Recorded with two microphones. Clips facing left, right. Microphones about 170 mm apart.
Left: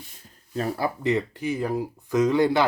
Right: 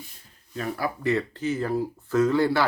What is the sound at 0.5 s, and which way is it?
Speech, 35° left (ahead or behind).